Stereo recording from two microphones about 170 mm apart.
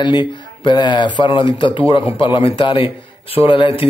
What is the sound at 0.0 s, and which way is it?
Speech, 25° left (ahead or behind).